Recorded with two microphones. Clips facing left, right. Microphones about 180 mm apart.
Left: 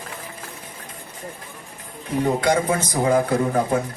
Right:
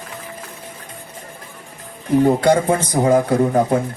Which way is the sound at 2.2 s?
35° right (ahead or behind).